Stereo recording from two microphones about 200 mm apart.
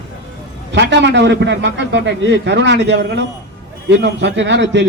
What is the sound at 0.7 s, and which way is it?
A man's voice, 60° right (ahead or behind).